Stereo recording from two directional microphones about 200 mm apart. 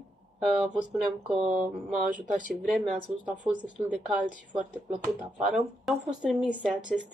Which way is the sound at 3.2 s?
5° right (ahead or behind).